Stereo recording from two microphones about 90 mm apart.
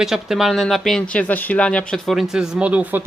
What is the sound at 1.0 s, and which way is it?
Speech, 15° left (ahead or behind).